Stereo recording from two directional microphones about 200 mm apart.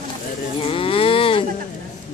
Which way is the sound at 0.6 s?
25° left (ahead or behind).